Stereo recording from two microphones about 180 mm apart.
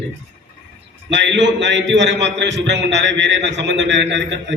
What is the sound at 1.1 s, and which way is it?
A man's voice, 80° right.